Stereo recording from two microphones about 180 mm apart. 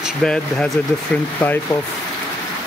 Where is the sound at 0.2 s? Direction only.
5° left (ahead or behind).